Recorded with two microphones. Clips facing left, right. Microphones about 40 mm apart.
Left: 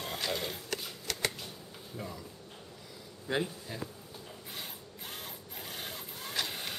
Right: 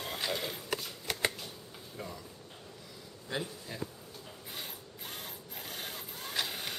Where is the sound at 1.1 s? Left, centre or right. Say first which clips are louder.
Right 2 dB; right.